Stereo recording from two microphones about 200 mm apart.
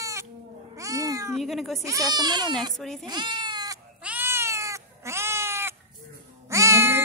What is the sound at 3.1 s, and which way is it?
Goat, 20° right (ahead or behind).